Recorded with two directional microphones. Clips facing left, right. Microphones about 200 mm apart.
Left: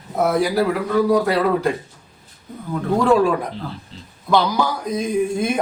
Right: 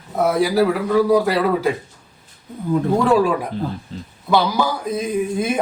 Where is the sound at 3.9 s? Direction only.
50° right (ahead or behind).